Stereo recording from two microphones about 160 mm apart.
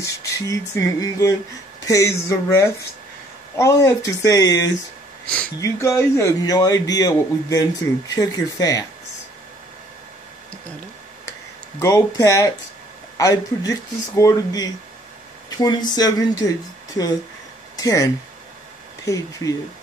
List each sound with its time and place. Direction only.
0.0 s speech: 20° left (ahead or behind)
11.8 s speech: 20° left (ahead or behind)